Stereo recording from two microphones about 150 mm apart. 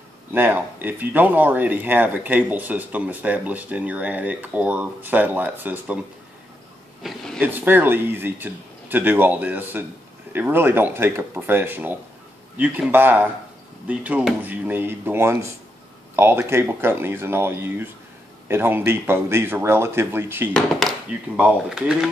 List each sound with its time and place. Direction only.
0.3 s speech: 15° right (ahead or behind)
7.0 s a sound: centre (ahead or behind)
7.4 s speech: 15° right (ahead or behind)
21.4 s speech: 5° right (ahead or behind)